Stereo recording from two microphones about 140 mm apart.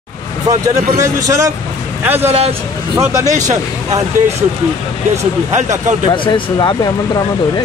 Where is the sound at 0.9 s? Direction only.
20° right (ahead or behind).